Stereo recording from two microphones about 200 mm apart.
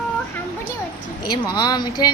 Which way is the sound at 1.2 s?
20° left (ahead or behind).